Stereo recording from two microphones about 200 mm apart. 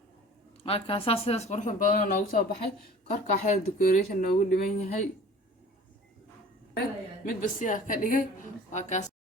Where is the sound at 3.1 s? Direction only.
35° left (ahead or behind).